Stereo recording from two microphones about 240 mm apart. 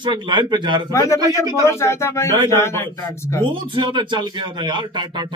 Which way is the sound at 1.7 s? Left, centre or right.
Centre.